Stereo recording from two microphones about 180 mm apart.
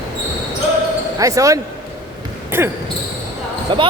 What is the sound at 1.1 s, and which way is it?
Speech, 20° right (ahead or behind).